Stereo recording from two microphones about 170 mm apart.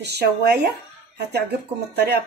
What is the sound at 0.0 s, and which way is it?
Speech, 75° right (ahead or behind).